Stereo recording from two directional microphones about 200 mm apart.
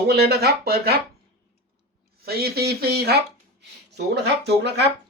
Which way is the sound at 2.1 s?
50° right (ahead or behind).